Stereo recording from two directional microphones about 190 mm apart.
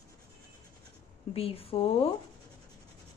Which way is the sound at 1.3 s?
30° left (ahead or behind).